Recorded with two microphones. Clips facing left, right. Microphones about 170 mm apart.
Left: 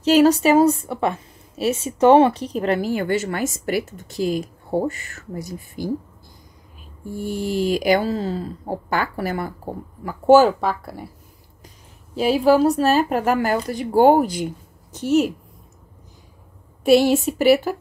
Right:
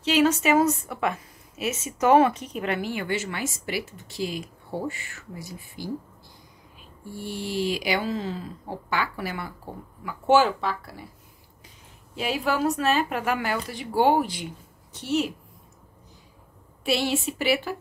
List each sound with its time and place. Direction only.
0.0 s a woman's voice: 40° left (ahead or behind)
7.1 s speech: 45° left (ahead or behind)
12.2 s speech: 35° left (ahead or behind)
16.8 s speech: 45° left (ahead or behind)